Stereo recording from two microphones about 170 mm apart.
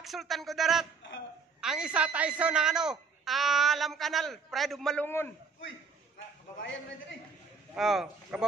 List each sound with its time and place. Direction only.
0.0 s a man's voice: centre (ahead or behind)
5.0 s a man's voice: 10° left (ahead or behind)
7.7 s a man's voice: centre (ahead or behind)